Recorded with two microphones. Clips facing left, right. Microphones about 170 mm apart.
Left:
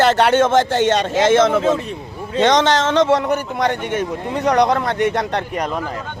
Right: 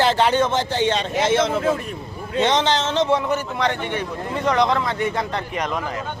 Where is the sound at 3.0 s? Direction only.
75° left (ahead or behind).